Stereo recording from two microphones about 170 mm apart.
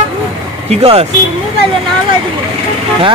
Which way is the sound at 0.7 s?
35° right (ahead or behind).